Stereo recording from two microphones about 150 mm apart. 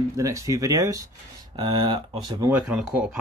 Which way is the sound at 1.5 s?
30° right (ahead or behind).